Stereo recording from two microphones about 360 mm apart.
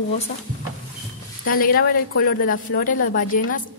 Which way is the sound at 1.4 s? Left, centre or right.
Left.